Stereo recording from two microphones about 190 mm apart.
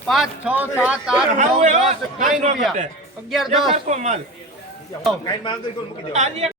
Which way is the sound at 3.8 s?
40° right (ahead or behind).